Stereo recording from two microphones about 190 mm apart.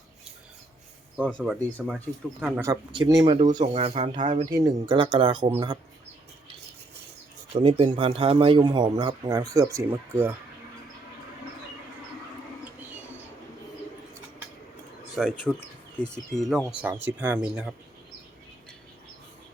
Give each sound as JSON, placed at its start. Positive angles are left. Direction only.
{"t": 1.1, "sound": "speech", "side_deg": 5}
{"t": 1.4, "sound": "speech", "side_deg": -5}
{"t": 2.9, "sound": "speech", "side_deg": -25}
{"t": 4.5, "sound": "speech", "side_deg": -20}
{"t": 7.5, "sound": "speech", "side_deg": -25}
{"t": 15.1, "sound": "speech", "side_deg": 0}